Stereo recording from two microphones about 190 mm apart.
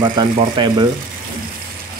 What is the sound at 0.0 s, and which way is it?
Speech, 25° right (ahead or behind).